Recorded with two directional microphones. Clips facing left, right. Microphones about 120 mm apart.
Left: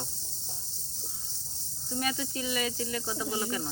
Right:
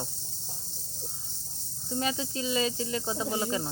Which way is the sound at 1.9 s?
25° right (ahead or behind).